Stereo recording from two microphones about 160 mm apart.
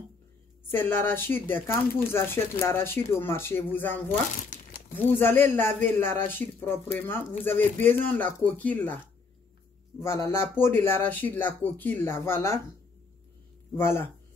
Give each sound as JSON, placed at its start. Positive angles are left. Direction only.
{"t": 0.7, "sound": "speech", "side_deg": 15}
{"t": 4.5, "sound": "crumpling", "side_deg": 60}
{"t": 4.9, "sound": "speech", "side_deg": 15}
{"t": 13.7, "sound": "speech", "side_deg": 15}